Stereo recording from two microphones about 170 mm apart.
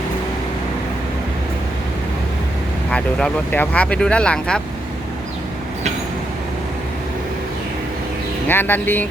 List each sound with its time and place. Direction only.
2.9 s speech: 5° left (ahead or behind)
8.4 s speech: 10° left (ahead or behind)